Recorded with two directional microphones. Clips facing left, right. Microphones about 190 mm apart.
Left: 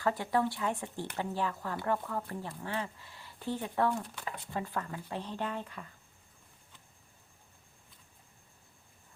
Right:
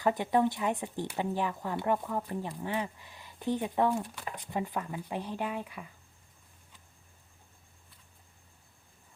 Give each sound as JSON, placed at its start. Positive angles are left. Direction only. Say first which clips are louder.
{"t": 0.0, "sound": "speech", "louder": "right 3 dB", "side_deg": -20}